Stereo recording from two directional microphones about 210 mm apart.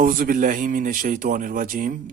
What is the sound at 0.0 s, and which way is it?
Speech, 40° right (ahead or behind).